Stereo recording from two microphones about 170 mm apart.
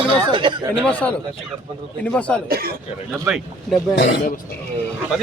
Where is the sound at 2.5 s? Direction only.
60° right (ahead or behind).